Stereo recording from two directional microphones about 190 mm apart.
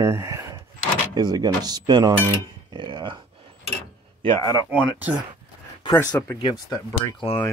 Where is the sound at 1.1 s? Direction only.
20° right (ahead or behind).